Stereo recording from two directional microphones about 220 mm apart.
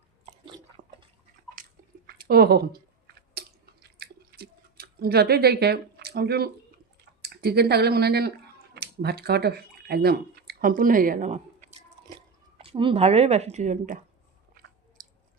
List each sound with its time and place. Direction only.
0.3 s biting: 20° right (ahead or behind)
1.6 s a sound: 40° right (ahead or behind)
3.4 s chewing: 45° right (ahead or behind)
7.2 s speech: 45° right (ahead or behind)